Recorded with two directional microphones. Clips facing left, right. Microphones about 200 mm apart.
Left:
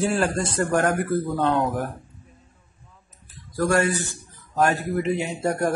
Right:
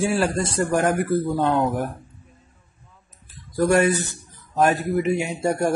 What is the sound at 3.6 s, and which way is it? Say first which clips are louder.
A man's voice: right 3 dB; 20° right (ahead or behind).